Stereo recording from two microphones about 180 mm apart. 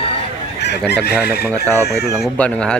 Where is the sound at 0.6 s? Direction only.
70° left (ahead or behind).